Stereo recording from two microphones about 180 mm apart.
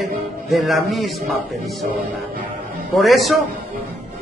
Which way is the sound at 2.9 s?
Centre (ahead or behind).